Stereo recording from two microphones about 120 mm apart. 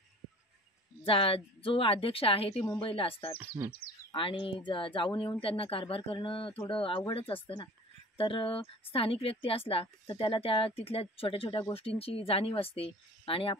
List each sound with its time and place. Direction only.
1.0 s speech: 50° left (ahead or behind)